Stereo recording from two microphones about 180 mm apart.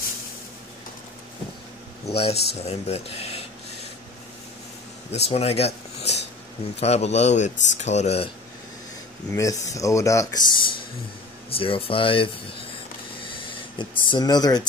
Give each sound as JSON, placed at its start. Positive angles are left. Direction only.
{"t": 2.0, "sound": "speech", "side_deg": 35}
{"t": 5.1, "sound": "speech", "side_deg": 35}
{"t": 9.3, "sound": "speech", "side_deg": 20}
{"t": 13.3, "sound": "speech", "side_deg": 25}